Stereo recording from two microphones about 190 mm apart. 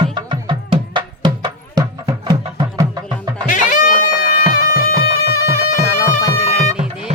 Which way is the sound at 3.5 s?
45° left (ahead or behind).